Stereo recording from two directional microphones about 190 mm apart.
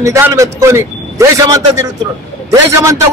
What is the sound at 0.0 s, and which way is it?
A man's voice, 15° right (ahead or behind).